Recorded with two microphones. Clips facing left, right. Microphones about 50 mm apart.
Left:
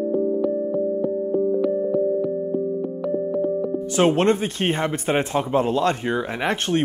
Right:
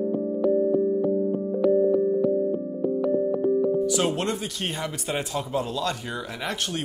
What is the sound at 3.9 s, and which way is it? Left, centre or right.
Speech, left.